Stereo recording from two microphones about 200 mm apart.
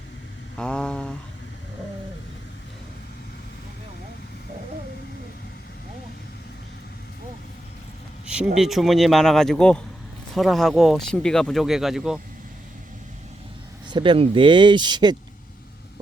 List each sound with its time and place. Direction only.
0.5 s speech: 5° left (ahead or behind)
8.3 s speech: 5° right (ahead or behind)
13.9 s speech: 25° right (ahead or behind)